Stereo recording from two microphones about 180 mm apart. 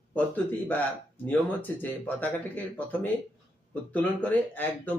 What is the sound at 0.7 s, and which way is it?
Speech, 10° left (ahead or behind).